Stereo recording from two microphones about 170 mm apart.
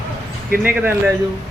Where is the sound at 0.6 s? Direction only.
10° right (ahead or behind).